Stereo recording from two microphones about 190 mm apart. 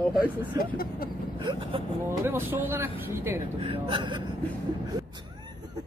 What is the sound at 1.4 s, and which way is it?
Speech, 25° right (ahead or behind).